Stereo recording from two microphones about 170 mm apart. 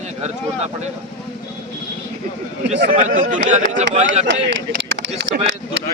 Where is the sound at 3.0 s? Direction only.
50° right (ahead or behind).